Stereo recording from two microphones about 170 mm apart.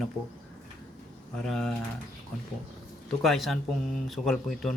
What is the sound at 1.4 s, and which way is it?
Speech, centre (ahead or behind).